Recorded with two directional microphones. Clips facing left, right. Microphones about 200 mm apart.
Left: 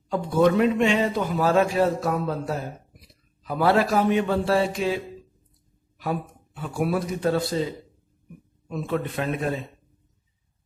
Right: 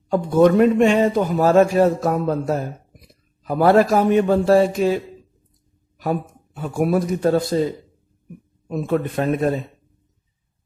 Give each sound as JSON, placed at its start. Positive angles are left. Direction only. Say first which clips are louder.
{"t": 0.1, "sound": "a man's voice", "louder": "right 5 dB", "side_deg": -45}
{"t": 8.6, "sound": "a man's voice", "louder": "right 6 dB", "side_deg": -45}